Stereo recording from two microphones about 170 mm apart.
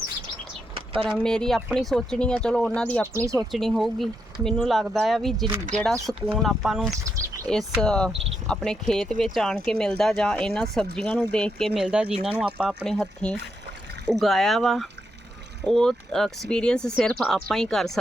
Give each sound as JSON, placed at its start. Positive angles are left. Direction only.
{"t": 0.9, "sound": "speech", "side_deg": 5}
{"t": 3.2, "sound": "speech", "side_deg": -15}
{"t": 3.5, "sound": "speech", "side_deg": 0}
{"t": 11.8, "sound": "speech", "side_deg": -5}